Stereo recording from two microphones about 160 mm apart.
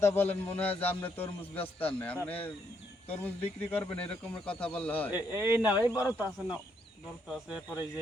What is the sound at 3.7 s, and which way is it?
A man's voice, 10° left (ahead or behind).